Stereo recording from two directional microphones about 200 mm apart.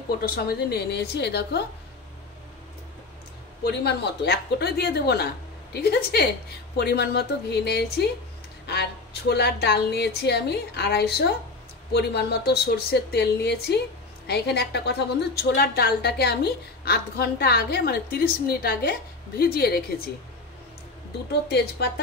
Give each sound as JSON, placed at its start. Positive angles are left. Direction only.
{"t": 0.2, "sound": "a woman's voice", "side_deg": 50}
{"t": 3.6, "sound": "a woman's voice", "side_deg": 55}
{"t": 9.3, "sound": "a woman's voice", "side_deg": 55}
{"t": 21.3, "sound": "a woman's voice", "side_deg": 55}